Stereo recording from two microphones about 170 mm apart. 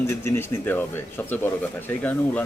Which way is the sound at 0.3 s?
10° left (ahead or behind).